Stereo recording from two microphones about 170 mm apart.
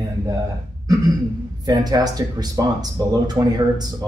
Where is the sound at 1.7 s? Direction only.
25° right (ahead or behind).